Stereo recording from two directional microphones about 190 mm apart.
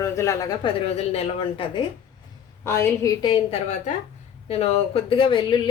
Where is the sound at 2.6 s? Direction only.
15° left (ahead or behind).